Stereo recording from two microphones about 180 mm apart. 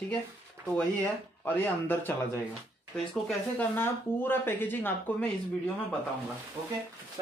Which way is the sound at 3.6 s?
10° left (ahead or behind).